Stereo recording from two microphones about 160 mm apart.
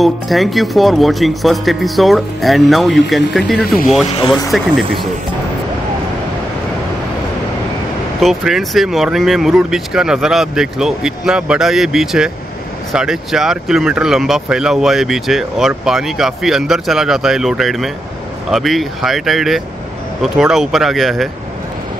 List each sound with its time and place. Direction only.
0.0 s speech: centre (ahead or behind)
3.6 s speech: 65° left (ahead or behind)
4.5 s speech: centre (ahead or behind)
8.2 s speech: centre (ahead or behind)